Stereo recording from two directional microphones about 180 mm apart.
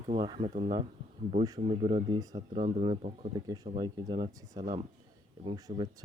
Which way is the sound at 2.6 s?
35° right (ahead or behind).